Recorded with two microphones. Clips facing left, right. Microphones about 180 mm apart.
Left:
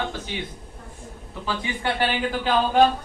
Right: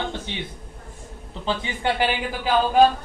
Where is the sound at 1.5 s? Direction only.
20° right (ahead or behind).